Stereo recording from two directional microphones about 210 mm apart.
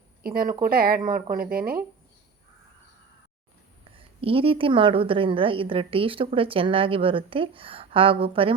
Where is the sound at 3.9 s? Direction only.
25° right (ahead or behind).